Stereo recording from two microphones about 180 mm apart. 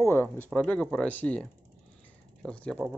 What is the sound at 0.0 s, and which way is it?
Speech, 10° left (ahead or behind).